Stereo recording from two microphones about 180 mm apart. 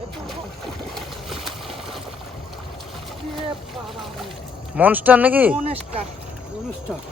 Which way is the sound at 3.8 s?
Centre (ahead or behind).